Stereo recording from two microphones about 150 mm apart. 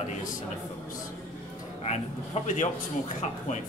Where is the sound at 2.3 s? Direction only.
45° left (ahead or behind).